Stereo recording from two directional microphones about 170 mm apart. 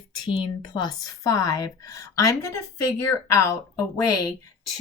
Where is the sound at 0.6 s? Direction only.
25° left (ahead or behind).